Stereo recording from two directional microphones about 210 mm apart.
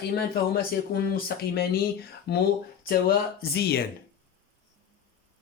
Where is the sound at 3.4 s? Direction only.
50° left (ahead or behind).